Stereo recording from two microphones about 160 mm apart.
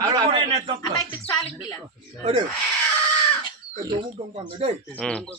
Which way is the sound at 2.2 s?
45° right (ahead or behind).